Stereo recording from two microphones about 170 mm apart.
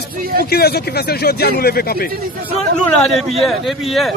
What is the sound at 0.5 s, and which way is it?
A man's voice, 65° left (ahead or behind).